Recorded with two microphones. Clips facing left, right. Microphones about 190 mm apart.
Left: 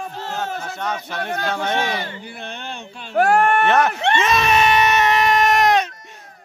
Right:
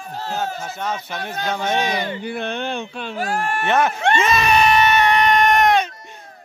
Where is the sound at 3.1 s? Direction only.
60° left (ahead or behind).